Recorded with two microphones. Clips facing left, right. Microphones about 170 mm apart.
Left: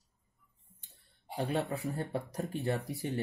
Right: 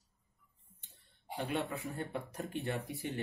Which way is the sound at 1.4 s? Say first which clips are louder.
Left 4 dB; 35° left (ahead or behind).